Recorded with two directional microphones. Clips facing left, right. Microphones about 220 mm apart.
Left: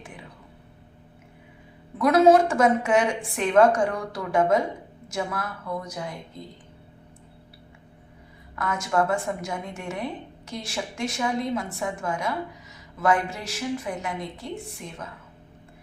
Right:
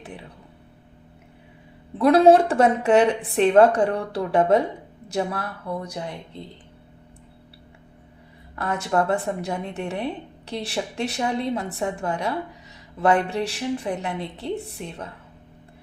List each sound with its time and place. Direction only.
2.0 s a woman's voice: 30° right (ahead or behind)
8.5 s a woman's voice: 35° right (ahead or behind)